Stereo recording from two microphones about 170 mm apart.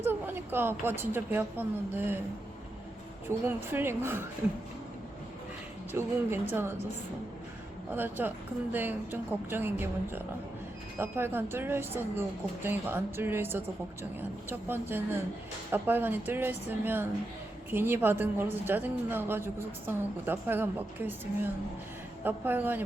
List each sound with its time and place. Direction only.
0.0 s a woman's voice: 10° right (ahead or behind)
3.2 s a woman's voice: 10° right (ahead or behind)
5.9 s a woman's voice: 15° right (ahead or behind)
7.9 s a woman's voice: 10° right (ahead or behind)